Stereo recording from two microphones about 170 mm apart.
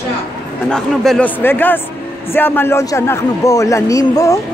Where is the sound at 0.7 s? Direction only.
5° left (ahead or behind); by 4.4 s 20° left (ahead or behind).